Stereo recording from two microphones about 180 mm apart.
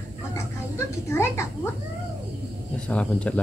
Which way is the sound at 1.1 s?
15° left (ahead or behind).